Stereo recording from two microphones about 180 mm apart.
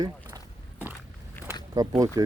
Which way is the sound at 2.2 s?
20° right (ahead or behind).